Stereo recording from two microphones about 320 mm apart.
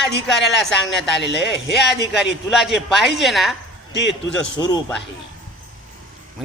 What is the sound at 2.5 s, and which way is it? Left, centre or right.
Speech, centre.